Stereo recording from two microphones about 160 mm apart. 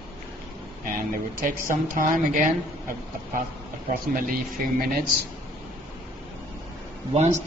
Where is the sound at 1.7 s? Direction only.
60° right (ahead or behind).